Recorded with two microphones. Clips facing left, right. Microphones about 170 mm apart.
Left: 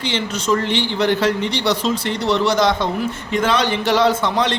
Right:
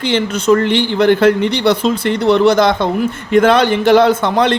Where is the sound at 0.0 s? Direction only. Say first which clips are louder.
Right 7 dB; 55° right (ahead or behind).